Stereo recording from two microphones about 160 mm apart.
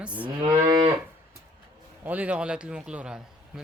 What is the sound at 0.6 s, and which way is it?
Moo, 20° right (ahead or behind).